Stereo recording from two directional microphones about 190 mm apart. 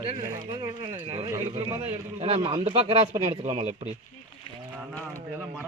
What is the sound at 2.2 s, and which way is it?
Speech, 30° right (ahead or behind).